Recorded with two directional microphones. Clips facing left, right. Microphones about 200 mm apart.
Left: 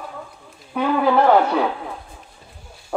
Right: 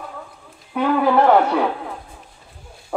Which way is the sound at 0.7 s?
Centre (ahead or behind).